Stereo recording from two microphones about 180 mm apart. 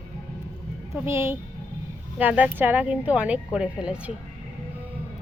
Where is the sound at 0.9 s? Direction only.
15° right (ahead or behind).